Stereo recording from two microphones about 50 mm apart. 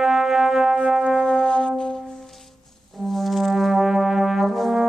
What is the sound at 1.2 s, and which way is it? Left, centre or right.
Music, centre.